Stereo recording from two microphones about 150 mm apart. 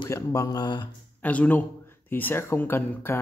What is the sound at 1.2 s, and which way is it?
Speech, 10° left (ahead or behind).